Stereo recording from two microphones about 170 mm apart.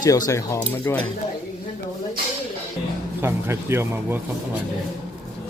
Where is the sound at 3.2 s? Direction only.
15° right (ahead or behind).